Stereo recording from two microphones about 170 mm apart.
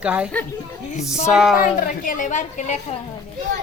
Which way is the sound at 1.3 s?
Centre (ahead or behind).